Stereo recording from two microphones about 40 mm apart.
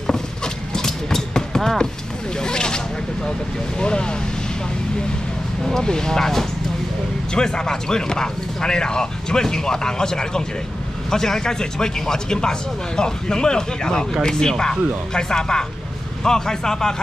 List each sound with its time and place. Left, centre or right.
0.7 s a sound: centre
3.8 s speech: left
5.7 s speech: centre